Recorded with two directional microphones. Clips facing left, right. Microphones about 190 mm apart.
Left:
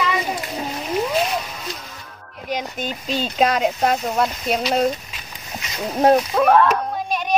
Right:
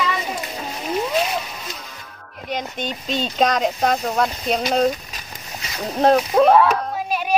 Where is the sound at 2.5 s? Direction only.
5° left (ahead or behind).